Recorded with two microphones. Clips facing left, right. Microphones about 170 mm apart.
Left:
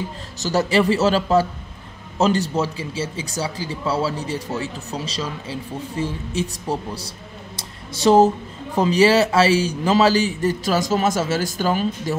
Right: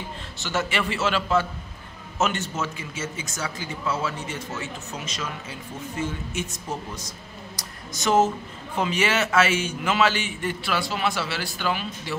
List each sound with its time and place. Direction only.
0.4 s speech: 35° left (ahead or behind)